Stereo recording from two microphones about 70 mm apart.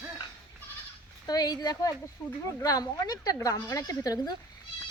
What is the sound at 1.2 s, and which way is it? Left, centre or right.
A woman's voice, left.